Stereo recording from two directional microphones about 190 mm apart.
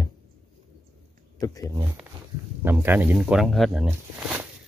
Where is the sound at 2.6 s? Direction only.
10° right (ahead or behind).